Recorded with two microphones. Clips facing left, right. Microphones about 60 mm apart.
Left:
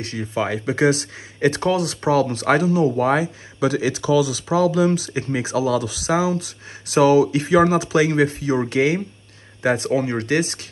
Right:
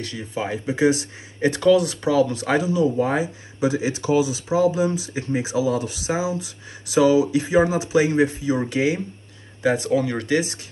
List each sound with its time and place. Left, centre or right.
0.4 s speech: left